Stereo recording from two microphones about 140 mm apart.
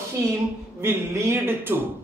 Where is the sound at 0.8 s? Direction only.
15° right (ahead or behind).